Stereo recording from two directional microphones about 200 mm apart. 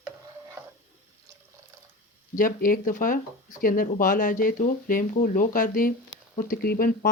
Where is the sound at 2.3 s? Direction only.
45° left (ahead or behind).